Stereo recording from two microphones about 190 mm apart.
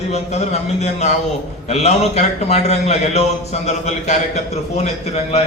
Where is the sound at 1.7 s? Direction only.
35° left (ahead or behind).